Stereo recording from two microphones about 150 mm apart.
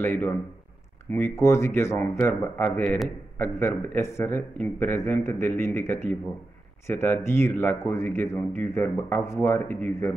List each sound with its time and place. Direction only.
0.0 s speech: 15° left (ahead or behind)